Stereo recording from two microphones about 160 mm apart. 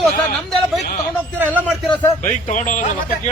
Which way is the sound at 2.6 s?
50° left (ahead or behind).